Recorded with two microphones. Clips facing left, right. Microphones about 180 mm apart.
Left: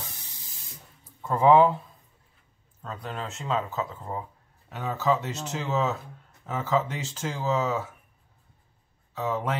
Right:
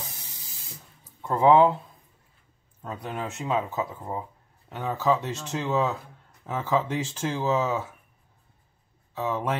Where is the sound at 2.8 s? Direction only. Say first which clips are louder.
Right 2 dB; 15° right (ahead or behind).